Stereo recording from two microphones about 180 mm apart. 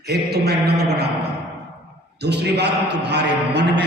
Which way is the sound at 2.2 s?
70° right (ahead or behind).